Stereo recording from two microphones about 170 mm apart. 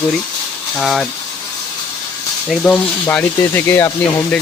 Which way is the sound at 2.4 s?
5° left (ahead or behind).